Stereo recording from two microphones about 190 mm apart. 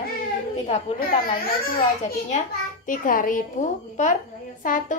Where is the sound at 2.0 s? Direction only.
40° left (ahead or behind).